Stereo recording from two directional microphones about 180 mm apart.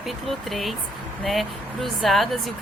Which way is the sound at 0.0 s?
Centre (ahead or behind).